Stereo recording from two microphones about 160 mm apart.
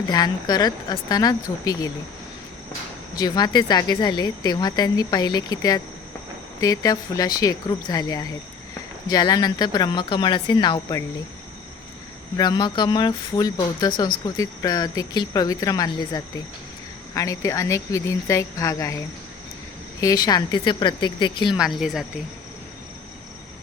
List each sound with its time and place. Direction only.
0.1 s a woman's voice: 25° left (ahead or behind)
3.2 s a woman's voice: 25° left (ahead or behind)
12.4 s a woman's voice: 25° left (ahead or behind)
21.6 s a woman's voice: 5° right (ahead or behind)